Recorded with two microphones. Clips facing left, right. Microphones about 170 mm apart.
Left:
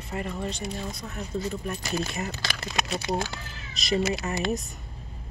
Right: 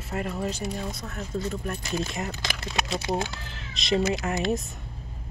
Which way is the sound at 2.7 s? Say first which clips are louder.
Right 1 dB; 20° right (ahead or behind).